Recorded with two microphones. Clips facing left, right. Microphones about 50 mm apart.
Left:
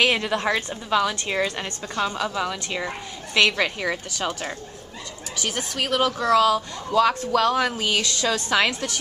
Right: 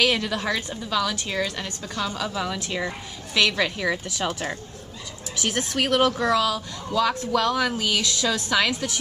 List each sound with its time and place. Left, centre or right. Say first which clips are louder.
0.0 s a woman's voice: left 2 dB; centre
4.2 s a woman's voice: right 1 dB; centre
5.9 s speech: right 1 dB; centre
6.3 s a woman's voice: left 5 dB; centre